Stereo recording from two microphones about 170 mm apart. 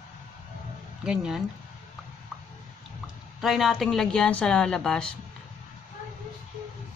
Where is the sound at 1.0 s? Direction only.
5° right (ahead or behind).